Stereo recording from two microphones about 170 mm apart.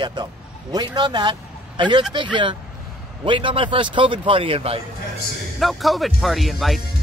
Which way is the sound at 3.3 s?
30° right (ahead or behind).